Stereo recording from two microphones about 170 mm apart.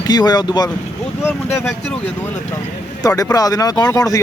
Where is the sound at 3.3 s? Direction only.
20° left (ahead or behind).